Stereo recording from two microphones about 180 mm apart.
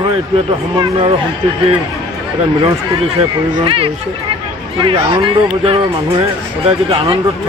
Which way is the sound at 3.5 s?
30° right (ahead or behind).